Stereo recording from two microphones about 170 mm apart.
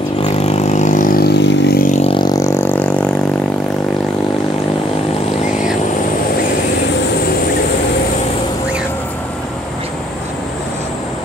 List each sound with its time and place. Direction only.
0.2 s vehicle: 35° left (ahead or behind); by 1.9 s 75° left (ahead or behind)
1.9 s vehicle: 35° left (ahead or behind); by 3.1 s 10° left (ahead or behind)